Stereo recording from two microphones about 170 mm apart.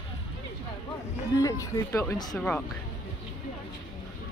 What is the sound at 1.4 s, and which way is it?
Speech, 20° left (ahead or behind).